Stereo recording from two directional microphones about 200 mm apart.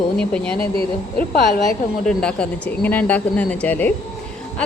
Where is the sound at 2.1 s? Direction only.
5° left (ahead or behind).